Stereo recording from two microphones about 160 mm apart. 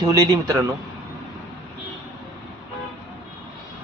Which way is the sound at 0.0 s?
20° right (ahead or behind).